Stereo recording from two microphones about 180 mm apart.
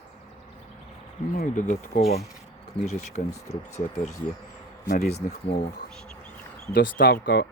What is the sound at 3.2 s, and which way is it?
Speech, 50° left (ahead or behind).